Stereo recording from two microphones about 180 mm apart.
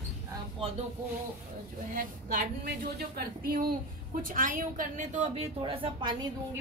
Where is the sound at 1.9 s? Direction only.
50° right (ahead or behind); by 6.1 s 30° right (ahead or behind).